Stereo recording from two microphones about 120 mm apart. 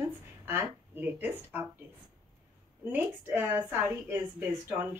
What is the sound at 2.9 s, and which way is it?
A woman's voice, 15° right (ahead or behind).